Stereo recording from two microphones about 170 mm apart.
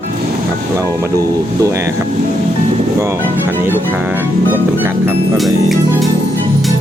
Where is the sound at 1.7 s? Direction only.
15° right (ahead or behind).